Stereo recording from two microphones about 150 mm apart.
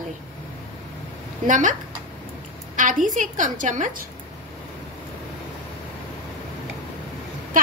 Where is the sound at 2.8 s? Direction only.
60° right (ahead or behind).